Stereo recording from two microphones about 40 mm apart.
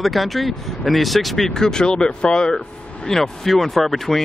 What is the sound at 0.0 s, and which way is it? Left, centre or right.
Speech, centre.